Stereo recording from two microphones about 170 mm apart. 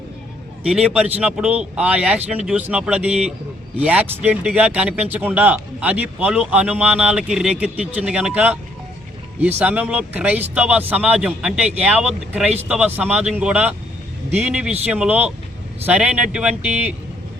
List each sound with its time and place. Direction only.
0.6 s speech: 5° right (ahead or behind)